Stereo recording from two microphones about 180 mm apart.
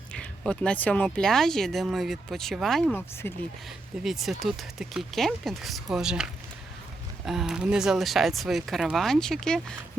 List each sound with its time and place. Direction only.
0.1 s speech: 5° left (ahead or behind)
3.2 s speech: 10° left (ahead or behind)
4.0 s speech: centre (ahead or behind)